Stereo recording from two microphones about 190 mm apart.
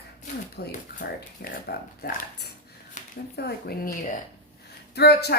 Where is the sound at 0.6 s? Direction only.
55° left (ahead or behind).